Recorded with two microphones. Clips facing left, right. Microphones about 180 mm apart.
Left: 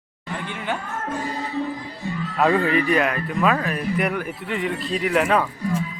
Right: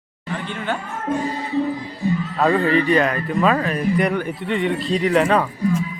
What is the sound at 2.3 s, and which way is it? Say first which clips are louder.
Speech: even; 5° left (ahead or behind).